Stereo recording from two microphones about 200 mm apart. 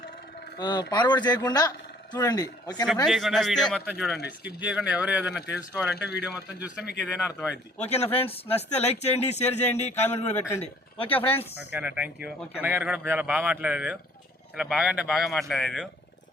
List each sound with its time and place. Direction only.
0.6 s speech: 20° left (ahead or behind)
3.1 s a man's voice: centre (ahead or behind)
7.8 s speech: 30° left (ahead or behind)
11.5 s a man's voice: 5° right (ahead or behind)